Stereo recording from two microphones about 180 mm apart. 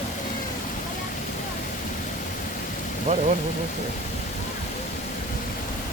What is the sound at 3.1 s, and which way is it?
Speech, 40° right (ahead or behind).